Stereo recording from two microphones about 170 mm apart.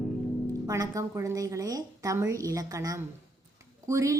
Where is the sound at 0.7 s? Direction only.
20° right (ahead or behind).